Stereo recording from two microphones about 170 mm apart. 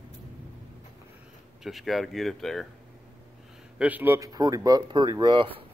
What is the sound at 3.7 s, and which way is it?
Speech, 10° right (ahead or behind).